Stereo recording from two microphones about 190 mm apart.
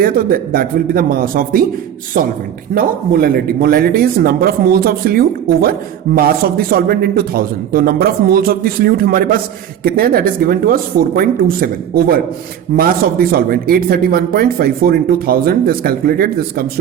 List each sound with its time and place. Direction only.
0.0 s speech: 50° right (ahead or behind)
2.7 s speech: 50° right (ahead or behind)